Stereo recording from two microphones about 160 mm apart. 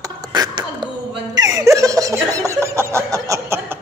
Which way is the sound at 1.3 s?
20° right (ahead or behind).